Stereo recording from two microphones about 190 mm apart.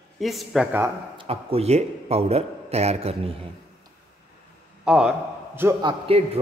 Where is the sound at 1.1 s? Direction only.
30° right (ahead or behind).